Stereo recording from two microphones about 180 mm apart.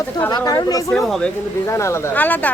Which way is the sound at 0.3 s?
20° left (ahead or behind).